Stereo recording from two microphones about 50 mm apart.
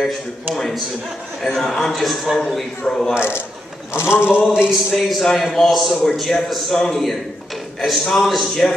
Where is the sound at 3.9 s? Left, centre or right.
Left.